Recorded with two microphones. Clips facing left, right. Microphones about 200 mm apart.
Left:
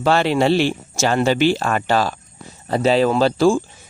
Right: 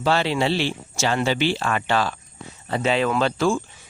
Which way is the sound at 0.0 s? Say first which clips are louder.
Left 5 dB; 50° left (ahead or behind).